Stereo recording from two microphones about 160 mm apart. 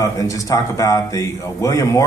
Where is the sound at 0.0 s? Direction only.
20° left (ahead or behind).